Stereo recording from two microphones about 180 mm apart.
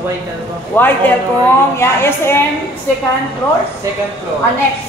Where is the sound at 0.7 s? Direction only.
10° left (ahead or behind).